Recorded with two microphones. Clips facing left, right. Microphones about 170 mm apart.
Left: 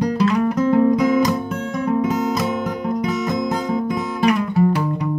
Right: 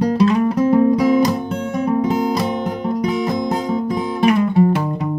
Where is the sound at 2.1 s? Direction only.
30° right (ahead or behind).